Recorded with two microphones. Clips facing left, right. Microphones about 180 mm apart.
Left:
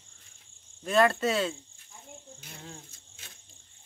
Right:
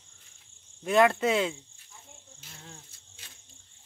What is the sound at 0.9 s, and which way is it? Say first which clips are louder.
Speech: right 2 dB; 15° right (ahead or behind).